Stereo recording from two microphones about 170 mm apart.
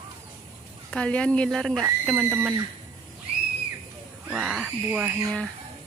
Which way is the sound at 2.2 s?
10° right (ahead or behind).